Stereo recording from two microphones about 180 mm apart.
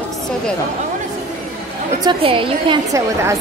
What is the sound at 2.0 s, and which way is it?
A woman's voice, 25° right (ahead or behind).